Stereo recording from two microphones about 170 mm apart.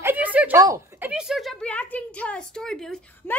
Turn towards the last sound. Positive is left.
turn(degrees=5)  # may be behind; listen again after turning